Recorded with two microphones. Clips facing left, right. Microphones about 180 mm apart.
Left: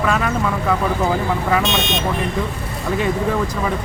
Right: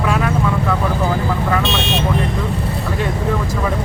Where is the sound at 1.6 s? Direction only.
30° right (ahead or behind).